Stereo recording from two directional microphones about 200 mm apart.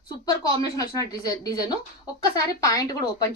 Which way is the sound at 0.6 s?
15° left (ahead or behind).